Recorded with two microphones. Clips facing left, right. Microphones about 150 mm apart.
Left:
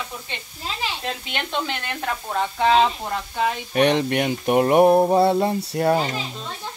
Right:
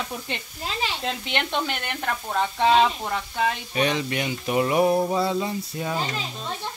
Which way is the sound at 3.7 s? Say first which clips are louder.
Left 6 dB; 60° left (ahead or behind).